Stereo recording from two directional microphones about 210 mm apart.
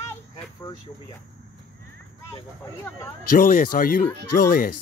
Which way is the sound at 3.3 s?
40° left (ahead or behind).